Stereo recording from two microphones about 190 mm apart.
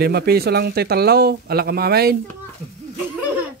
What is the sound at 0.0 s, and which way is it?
Speech, 55° right (ahead or behind).